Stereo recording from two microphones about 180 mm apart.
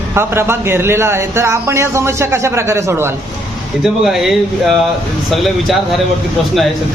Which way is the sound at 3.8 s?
Centre (ahead or behind).